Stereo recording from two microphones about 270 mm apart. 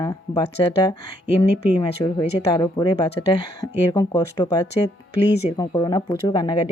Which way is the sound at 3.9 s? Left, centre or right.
Centre.